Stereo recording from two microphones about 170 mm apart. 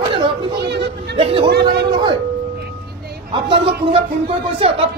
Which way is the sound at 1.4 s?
75° right (ahead or behind).